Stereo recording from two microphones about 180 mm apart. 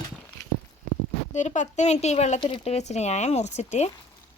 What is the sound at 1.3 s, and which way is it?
Speech, 40° left (ahead or behind).